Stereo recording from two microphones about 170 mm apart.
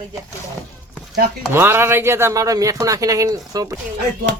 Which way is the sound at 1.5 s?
15° right (ahead or behind).